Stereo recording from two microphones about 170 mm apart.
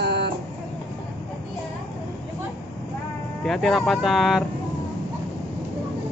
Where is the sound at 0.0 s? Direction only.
80° right.